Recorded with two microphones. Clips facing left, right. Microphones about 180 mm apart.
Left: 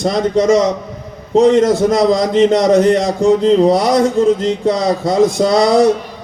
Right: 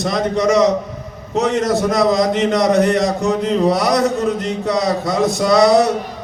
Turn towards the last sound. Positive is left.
turn(degrees=30)  # may be behind; listen again after turning